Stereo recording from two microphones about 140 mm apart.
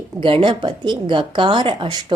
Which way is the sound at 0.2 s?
35° right (ahead or behind).